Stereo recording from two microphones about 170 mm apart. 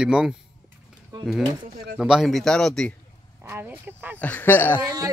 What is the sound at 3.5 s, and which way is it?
Speech, 10° right (ahead or behind).